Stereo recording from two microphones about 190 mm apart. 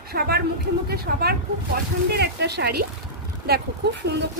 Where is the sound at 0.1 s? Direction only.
55° right (ahead or behind).